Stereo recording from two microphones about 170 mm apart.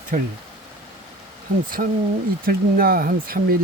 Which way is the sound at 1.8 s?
60° right (ahead or behind).